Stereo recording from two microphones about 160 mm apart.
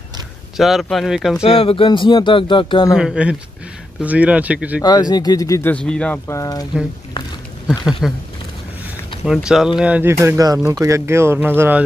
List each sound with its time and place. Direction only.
0.6 s speech: centre (ahead or behind)
1.4 s speech: 35° left (ahead or behind)
3.0 s speech: 5° right (ahead or behind)
4.8 s speech: 25° left (ahead or behind)
8.0 s speech: centre (ahead or behind)
9.2 s speech: 5° right (ahead or behind)